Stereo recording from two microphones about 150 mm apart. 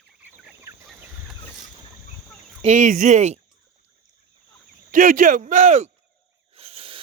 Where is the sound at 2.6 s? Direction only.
55° right (ahead or behind).